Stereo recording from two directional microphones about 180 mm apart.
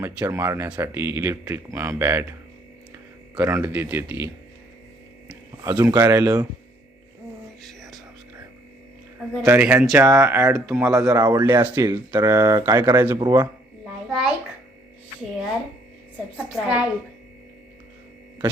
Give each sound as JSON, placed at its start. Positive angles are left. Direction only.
{"t": 0.0, "sound": "speech", "side_deg": -15}
{"t": 3.3, "sound": "speech", "side_deg": -10}
{"t": 5.7, "sound": "speech", "side_deg": -20}
{"t": 7.6, "sound": "music", "side_deg": 0}
{"t": 9.5, "sound": "speech", "side_deg": -10}
{"t": 11.1, "sound": "speech", "side_deg": -25}
{"t": 14.1, "sound": "music", "side_deg": -5}
{"t": 16.6, "sound": "a child's voice", "side_deg": -5}